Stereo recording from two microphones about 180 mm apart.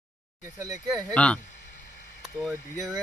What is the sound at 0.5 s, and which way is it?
Speech, 20° right (ahead or behind).